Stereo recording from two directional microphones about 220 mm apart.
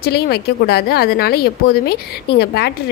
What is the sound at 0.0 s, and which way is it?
A woman's voice, 45° left (ahead or behind).